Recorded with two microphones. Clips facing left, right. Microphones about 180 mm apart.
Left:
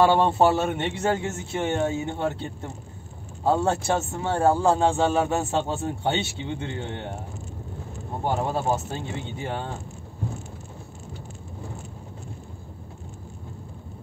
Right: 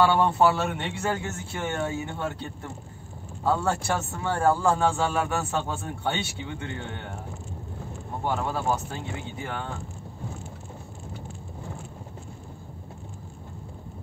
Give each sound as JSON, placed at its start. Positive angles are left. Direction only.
{"t": 0.0, "sound": "speech", "side_deg": 25}
{"t": 8.4, "sound": "speech", "side_deg": 25}